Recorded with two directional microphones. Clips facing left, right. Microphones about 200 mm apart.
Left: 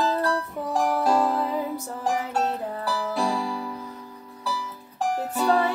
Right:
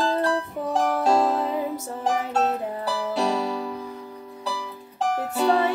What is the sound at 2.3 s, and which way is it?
Music, 20° right (ahead or behind).